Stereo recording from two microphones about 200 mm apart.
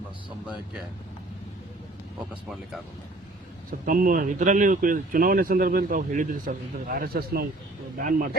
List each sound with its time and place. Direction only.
2.3 s speech: centre (ahead or behind)
3.7 s speech: 45° right (ahead or behind)